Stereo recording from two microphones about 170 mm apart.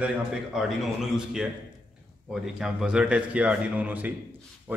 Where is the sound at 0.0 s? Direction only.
5° right (ahead or behind).